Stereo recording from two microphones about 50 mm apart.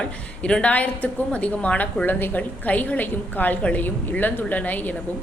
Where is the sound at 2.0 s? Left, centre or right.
Left.